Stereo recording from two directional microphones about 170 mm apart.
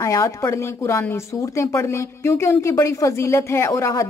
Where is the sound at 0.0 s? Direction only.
15° left (ahead or behind).